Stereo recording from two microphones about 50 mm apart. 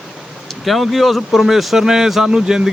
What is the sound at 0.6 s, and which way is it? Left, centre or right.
Speech, centre.